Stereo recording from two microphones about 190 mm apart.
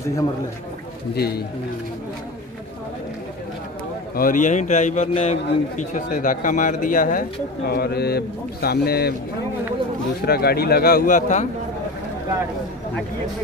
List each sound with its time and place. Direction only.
1.1 s speech: 55° left (ahead or behind)
4.1 s a man's voice: 45° left (ahead or behind)
10.2 s a man's voice: 55° left (ahead or behind)